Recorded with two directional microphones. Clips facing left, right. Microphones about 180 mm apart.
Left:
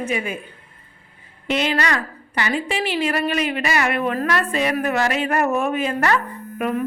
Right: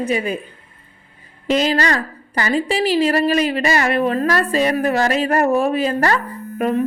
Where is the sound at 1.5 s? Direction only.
35° right (ahead or behind).